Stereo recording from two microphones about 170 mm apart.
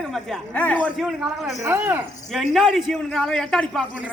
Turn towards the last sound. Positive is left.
turn(degrees=5)  # may be behind; listen again after turning